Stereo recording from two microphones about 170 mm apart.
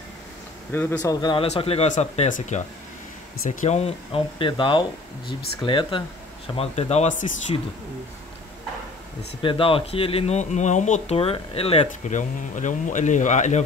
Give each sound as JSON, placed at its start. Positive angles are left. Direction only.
{"t": 0.7, "sound": "speech", "side_deg": 15}
{"t": 1.2, "sound": "speech", "side_deg": 30}
{"t": 9.4, "sound": "speech", "side_deg": 30}